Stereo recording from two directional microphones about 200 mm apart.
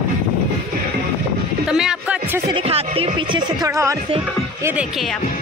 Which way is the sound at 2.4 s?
25° right (ahead or behind).